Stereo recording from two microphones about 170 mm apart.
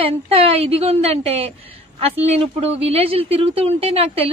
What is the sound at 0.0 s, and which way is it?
Speech, 35° right (ahead or behind).